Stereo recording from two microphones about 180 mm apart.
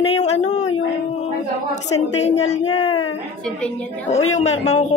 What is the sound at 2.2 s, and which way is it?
Speech, 35° left (ahead or behind).